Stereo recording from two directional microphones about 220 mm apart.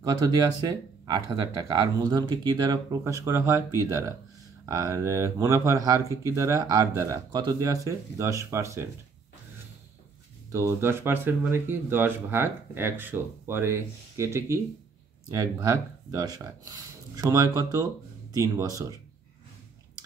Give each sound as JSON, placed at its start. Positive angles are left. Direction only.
{"t": 0.0, "sound": "speech", "side_deg": -15}
{"t": 10.5, "sound": "speech", "side_deg": -10}